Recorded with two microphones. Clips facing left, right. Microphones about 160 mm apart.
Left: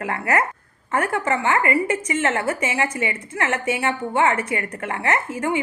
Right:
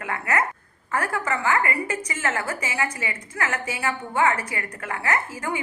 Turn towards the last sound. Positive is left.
turn(degrees=25)  # may be behind; listen again after turning